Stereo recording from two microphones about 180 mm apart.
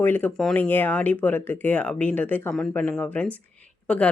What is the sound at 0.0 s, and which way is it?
Speech, 10° left (ahead or behind).